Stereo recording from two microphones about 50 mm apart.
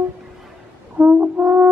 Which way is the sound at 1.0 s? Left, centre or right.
Right.